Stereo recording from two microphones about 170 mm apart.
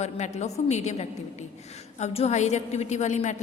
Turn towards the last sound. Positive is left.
turn(degrees=45)  # may be behind; listen again after turning